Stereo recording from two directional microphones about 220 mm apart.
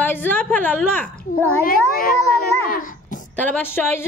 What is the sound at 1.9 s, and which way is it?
Child singing, 40° left (ahead or behind).